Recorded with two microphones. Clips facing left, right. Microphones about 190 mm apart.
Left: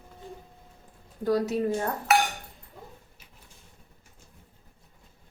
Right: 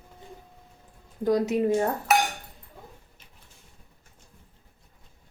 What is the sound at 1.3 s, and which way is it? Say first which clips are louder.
Speech: right 2 dB; 20° right (ahead or behind).